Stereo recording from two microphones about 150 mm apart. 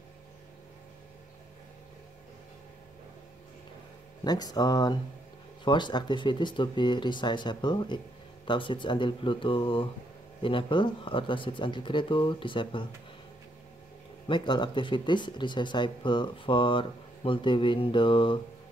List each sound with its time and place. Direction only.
4.2 s speech: 25° left (ahead or behind)
14.2 s speech: 30° left (ahead or behind)